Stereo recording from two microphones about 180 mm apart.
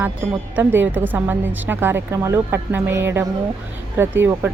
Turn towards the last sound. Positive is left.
turn(degrees=-10)  # may be behind; listen again after turning